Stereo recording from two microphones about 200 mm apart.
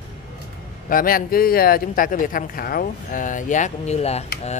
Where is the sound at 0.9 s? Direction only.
45° left (ahead or behind).